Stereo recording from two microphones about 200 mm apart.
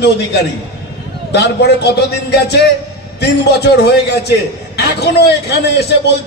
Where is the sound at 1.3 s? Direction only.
55° left (ahead or behind).